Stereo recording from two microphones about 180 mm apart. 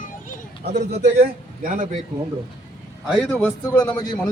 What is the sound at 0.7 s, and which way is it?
A man's voice, 65° right (ahead or behind).